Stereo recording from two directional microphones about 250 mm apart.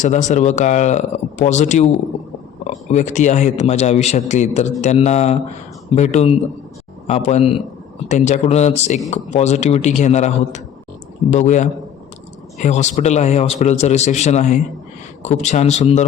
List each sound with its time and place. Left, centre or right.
0.0 s speech: left